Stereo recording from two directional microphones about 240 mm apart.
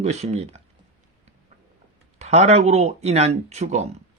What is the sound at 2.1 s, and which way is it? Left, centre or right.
Speech, right.